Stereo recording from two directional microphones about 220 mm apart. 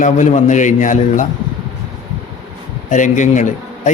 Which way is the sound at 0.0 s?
35° left (ahead or behind).